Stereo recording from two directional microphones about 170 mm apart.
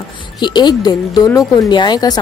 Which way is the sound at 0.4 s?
25° left (ahead or behind).